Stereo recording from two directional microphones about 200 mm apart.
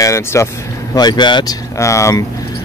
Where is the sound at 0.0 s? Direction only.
15° left (ahead or behind).